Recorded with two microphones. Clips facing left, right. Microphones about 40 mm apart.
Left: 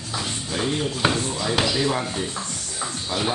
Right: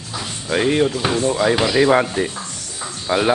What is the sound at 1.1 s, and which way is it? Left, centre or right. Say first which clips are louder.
Speech: right 8 dB; right.